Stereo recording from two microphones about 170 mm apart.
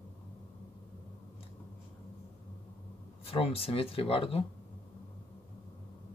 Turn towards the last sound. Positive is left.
turn(degrees=35)  # may be behind; listen again after turning